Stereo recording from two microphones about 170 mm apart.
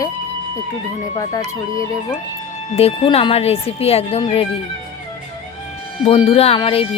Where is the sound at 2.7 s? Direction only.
35° left (ahead or behind).